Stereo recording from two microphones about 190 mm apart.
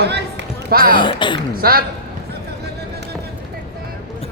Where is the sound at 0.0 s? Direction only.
60° right (ahead or behind).